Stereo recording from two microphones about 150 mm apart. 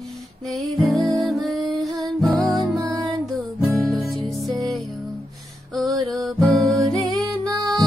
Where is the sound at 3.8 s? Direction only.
Centre (ahead or behind).